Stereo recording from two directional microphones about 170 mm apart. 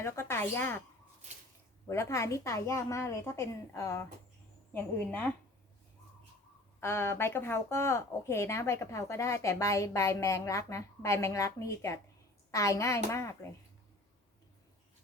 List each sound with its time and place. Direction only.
0.0 s speech: 15° left (ahead or behind)
1.9 s speech: 15° left (ahead or behind)
6.7 s speech: 15° left (ahead or behind)